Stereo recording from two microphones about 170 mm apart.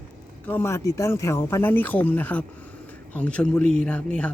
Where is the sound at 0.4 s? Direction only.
15° left (ahead or behind).